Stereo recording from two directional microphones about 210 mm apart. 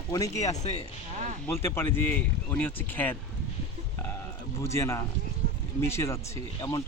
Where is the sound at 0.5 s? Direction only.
30° left (ahead or behind).